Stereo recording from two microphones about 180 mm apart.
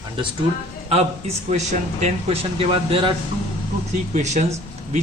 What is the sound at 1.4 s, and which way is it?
Speech, 40° right (ahead or behind).